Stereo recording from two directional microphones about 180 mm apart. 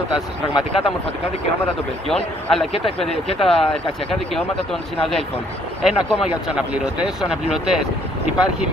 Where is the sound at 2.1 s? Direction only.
Centre (ahead or behind).